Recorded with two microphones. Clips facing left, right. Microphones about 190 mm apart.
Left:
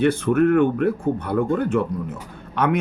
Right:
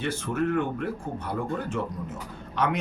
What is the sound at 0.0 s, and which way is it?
Speech, 60° left (ahead or behind).